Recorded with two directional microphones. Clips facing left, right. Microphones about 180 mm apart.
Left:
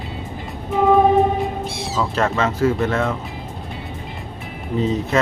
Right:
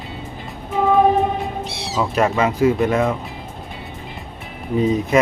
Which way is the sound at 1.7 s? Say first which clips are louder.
Left 2 dB; 50° left (ahead or behind).